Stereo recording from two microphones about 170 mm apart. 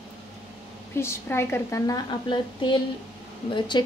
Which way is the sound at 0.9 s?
15° left (ahead or behind).